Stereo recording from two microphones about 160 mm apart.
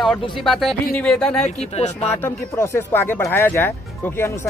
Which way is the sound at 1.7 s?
40° left (ahead or behind).